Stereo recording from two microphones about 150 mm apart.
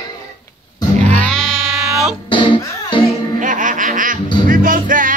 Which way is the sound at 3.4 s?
60° right (ahead or behind).